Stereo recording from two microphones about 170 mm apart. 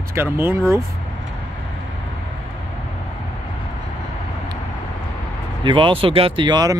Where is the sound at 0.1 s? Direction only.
15° right (ahead or behind).